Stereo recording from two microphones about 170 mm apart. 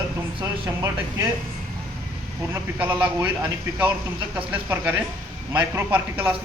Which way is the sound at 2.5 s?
10° right (ahead or behind).